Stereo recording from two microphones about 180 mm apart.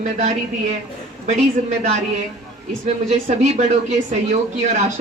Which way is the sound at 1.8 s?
40° right (ahead or behind).